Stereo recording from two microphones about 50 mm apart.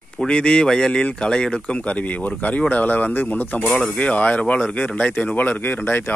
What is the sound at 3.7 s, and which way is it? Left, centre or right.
Speech, left.